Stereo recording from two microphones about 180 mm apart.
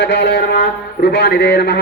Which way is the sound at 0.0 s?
65° left (ahead or behind).